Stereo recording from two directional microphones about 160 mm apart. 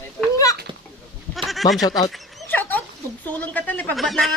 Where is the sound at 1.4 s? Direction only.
Centre (ahead or behind).